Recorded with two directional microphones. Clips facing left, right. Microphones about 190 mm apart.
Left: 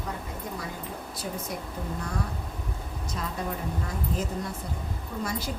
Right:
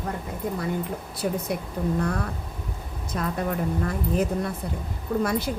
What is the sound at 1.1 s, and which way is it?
Speech, 65° right (ahead or behind).